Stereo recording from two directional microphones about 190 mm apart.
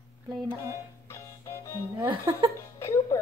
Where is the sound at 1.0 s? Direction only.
15° left (ahead or behind).